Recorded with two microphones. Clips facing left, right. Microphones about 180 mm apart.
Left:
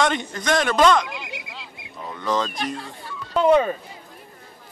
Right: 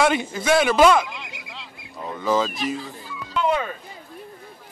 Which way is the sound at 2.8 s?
65° left (ahead or behind).